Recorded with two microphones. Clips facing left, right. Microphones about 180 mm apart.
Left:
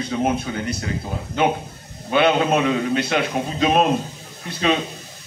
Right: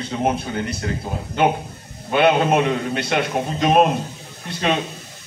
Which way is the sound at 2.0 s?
50° right (ahead or behind).